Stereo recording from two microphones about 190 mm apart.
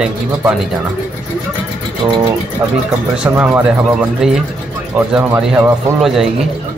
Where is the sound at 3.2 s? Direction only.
10° right (ahead or behind).